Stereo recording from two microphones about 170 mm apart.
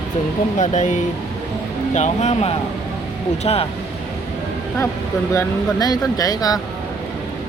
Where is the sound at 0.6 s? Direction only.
45° left (ahead or behind).